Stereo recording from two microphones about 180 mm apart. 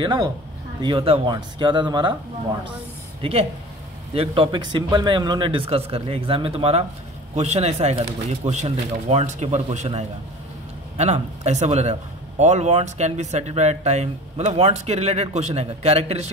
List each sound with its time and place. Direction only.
0.0 s speech: 25° right (ahead or behind)
3.2 s a man's voice: 30° right (ahead or behind)